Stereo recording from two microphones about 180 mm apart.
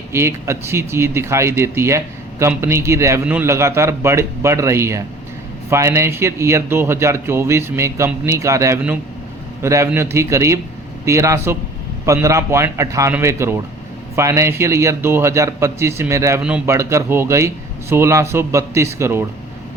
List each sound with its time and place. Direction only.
0.1 s a man's voice: 15° right (ahead or behind)